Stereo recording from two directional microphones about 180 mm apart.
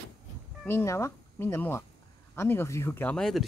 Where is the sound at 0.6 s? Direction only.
15° left (ahead or behind).